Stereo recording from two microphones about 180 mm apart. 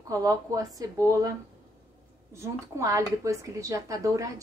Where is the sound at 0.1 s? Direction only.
20° right (ahead or behind).